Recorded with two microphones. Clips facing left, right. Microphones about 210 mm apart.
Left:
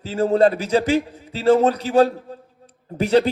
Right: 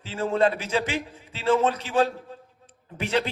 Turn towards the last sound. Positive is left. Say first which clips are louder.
# left 9 dB
turn(degrees=40)  # may be behind; listen again after turning